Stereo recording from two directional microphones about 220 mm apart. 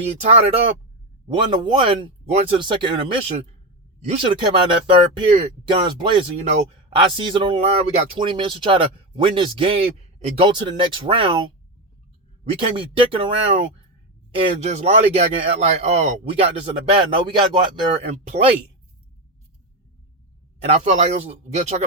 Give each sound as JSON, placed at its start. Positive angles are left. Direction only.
{"t": 1.3, "sound": "speech", "side_deg": -20}
{"t": 20.7, "sound": "speech", "side_deg": -30}